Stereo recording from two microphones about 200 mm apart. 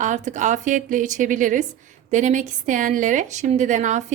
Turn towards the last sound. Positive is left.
turn(degrees=-35)  # may be behind; listen again after turning